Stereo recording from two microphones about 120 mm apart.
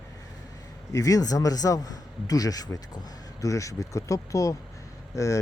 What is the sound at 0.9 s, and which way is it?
Speech, 30° left (ahead or behind).